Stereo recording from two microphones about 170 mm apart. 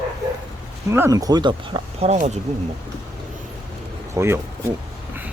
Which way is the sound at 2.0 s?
45° right (ahead or behind).